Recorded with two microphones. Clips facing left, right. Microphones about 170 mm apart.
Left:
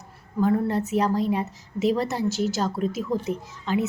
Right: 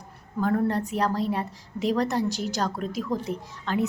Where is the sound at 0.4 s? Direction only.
5° left (ahead or behind).